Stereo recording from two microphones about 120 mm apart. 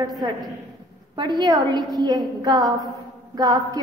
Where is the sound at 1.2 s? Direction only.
35° right (ahead or behind).